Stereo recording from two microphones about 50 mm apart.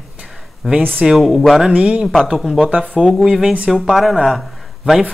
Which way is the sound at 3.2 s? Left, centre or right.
Centre.